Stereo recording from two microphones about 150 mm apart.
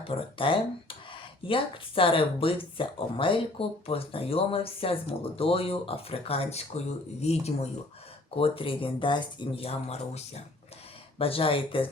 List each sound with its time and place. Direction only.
0.1 s speech: 35° left (ahead or behind)